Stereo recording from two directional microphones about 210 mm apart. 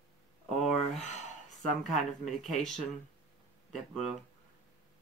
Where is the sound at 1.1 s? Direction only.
35° left (ahead or behind).